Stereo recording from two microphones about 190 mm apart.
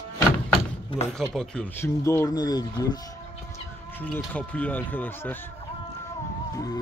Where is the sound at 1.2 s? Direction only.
Centre (ahead or behind).